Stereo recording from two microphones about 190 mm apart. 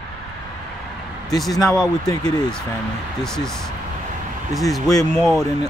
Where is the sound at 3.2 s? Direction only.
5° left (ahead or behind).